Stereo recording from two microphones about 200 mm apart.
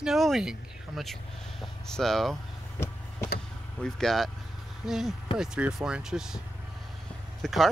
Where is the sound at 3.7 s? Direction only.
Centre (ahead or behind).